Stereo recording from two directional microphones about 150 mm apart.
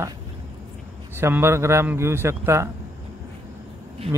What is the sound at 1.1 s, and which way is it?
A man's voice, 15° right (ahead or behind).